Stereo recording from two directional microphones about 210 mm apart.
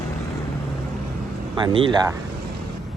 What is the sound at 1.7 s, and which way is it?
Speech, 25° right (ahead or behind).